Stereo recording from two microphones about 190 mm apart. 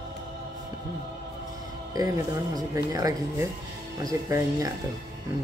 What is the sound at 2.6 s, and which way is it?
Speech, 20° right (ahead or behind).